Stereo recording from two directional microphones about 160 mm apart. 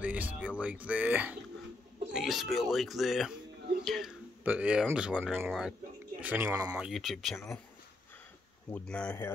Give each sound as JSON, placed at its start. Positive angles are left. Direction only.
{"t": 0.0, "sound": "speech", "side_deg": -10}
{"t": 5.5, "sound": "speech", "side_deg": 0}
{"t": 6.2, "sound": "speech", "side_deg": -15}
{"t": 6.8, "sound": "speech", "side_deg": 0}
{"t": 8.7, "sound": "speech", "side_deg": 5}